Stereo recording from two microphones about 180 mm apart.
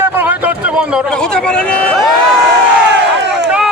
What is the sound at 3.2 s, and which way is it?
Crowd, 70° right (ahead or behind).